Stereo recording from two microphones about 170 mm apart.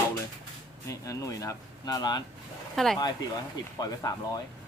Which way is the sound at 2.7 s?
Centre (ahead or behind).